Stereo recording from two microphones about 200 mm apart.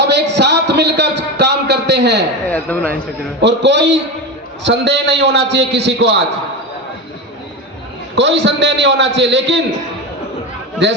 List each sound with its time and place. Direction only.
0.1 s a sound: 60° right (ahead or behind)
2.5 s speech: 5° left (ahead or behind)
3.4 s a man's voice: 60° right (ahead or behind)
8.1 s a man's voice: 60° right (ahead or behind)
10.8 s a man's voice: 60° right (ahead or behind)